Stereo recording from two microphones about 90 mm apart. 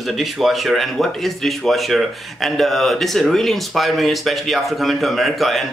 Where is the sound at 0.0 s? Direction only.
Centre (ahead or behind).